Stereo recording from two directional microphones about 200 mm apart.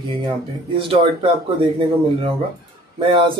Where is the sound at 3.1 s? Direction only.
25° right (ahead or behind).